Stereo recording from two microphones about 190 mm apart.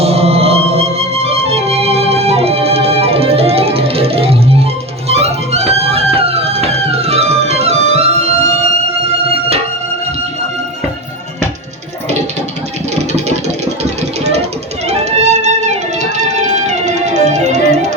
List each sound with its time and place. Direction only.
0.0 s music: 30° right (ahead or behind)
14.8 s music: 35° right (ahead or behind)